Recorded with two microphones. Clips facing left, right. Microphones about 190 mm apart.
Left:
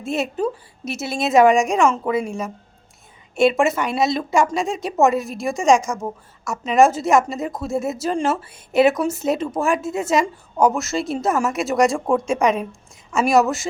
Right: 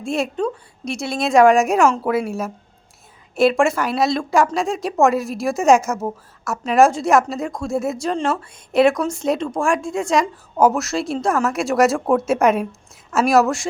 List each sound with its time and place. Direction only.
0.0 s a woman's voice: centre (ahead or behind)